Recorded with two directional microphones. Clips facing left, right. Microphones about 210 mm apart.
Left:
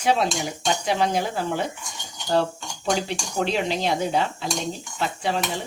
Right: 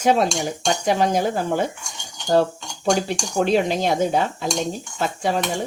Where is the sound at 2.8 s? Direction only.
45° right (ahead or behind).